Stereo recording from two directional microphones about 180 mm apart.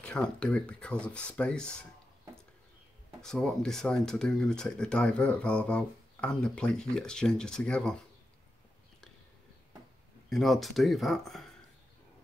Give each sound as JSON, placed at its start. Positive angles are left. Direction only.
{"t": 0.0, "sound": "speech", "side_deg": 5}
{"t": 3.2, "sound": "speech", "side_deg": 5}
{"t": 10.3, "sound": "speech", "side_deg": 0}